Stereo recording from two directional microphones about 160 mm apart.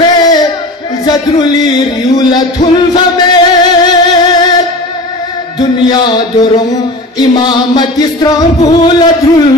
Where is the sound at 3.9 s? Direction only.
25° left (ahead or behind).